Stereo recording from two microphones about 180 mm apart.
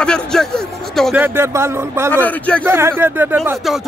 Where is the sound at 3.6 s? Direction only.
Centre (ahead or behind).